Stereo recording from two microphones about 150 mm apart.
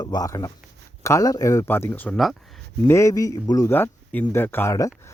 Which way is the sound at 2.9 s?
20° left (ahead or behind).